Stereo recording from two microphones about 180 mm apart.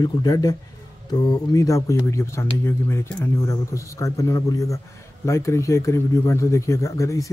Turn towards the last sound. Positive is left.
turn(degrees=15)  # may be behind; listen again after turning